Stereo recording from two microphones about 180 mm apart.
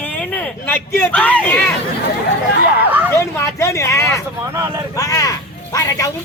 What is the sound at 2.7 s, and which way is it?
Vehicle, 10° right (ahead or behind).